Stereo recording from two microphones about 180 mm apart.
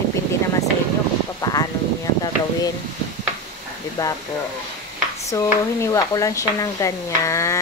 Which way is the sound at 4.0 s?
20° left (ahead or behind).